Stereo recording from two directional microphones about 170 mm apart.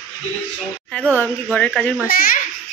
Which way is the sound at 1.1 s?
10° left (ahead or behind).